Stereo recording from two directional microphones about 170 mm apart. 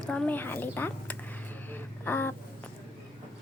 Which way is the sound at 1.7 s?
10° left (ahead or behind).